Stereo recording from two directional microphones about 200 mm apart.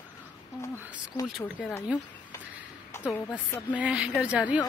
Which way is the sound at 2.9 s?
10° left (ahead or behind).